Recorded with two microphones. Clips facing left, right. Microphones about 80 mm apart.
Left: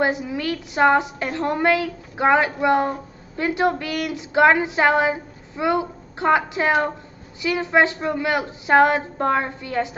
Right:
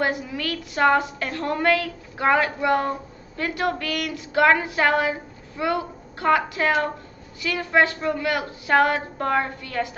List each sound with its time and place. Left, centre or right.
0.0 s a woman's voice: left